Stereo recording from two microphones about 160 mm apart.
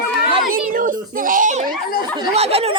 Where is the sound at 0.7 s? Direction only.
60° right (ahead or behind).